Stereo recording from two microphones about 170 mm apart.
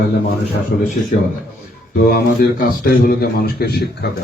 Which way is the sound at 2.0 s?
60° left (ahead or behind).